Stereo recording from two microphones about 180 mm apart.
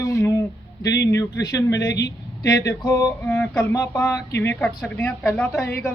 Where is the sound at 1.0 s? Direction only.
20° left (ahead or behind).